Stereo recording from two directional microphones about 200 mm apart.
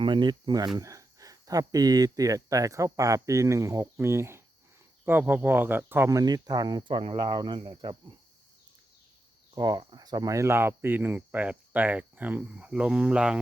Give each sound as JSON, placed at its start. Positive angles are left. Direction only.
{"t": 0.0, "sound": "speech", "side_deg": -25}
{"t": 9.6, "sound": "speech", "side_deg": -20}